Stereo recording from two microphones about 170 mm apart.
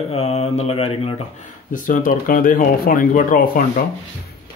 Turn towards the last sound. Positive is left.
turn(degrees=55)  # may be behind; listen again after turning